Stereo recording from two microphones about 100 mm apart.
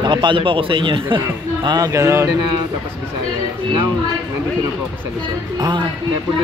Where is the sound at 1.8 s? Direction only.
35° right (ahead or behind).